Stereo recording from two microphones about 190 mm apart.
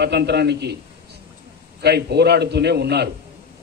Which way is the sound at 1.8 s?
60° right (ahead or behind).